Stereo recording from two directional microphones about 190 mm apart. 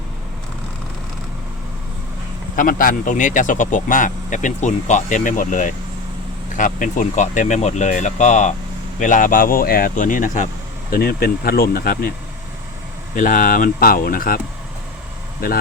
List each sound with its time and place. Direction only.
2.6 s speech: 45° left (ahead or behind)
10.9 s speech: 55° left (ahead or behind)
13.1 s speech: 45° left (ahead or behind)